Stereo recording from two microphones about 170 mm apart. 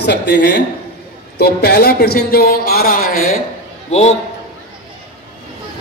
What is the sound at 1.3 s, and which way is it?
Speech, 65° left (ahead or behind).